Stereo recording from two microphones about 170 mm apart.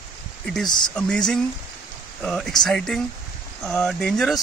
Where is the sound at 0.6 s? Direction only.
25° left (ahead or behind).